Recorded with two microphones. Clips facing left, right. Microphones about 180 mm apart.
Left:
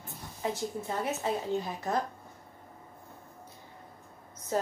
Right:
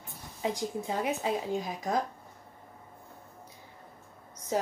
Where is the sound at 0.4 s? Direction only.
15° right (ahead or behind).